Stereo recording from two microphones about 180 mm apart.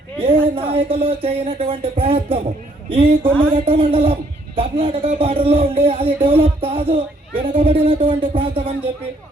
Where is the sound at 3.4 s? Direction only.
30° right (ahead or behind).